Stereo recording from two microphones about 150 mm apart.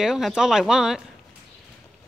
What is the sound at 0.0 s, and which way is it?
A woman's voice, 5° right (ahead or behind).